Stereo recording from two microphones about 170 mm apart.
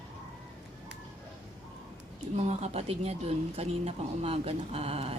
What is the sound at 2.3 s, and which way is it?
Speech, 40° right (ahead or behind).